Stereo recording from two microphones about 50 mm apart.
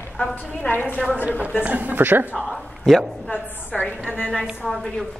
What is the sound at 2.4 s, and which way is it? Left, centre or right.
Speech, centre.